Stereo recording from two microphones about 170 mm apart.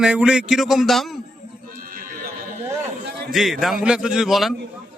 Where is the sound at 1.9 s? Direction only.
55° right (ahead or behind).